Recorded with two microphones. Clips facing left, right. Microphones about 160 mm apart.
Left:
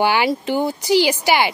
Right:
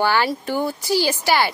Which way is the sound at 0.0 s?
15° left (ahead or behind).